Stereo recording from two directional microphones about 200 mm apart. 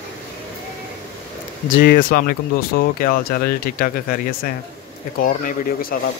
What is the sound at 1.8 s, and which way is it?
Speech, 45° left (ahead or behind).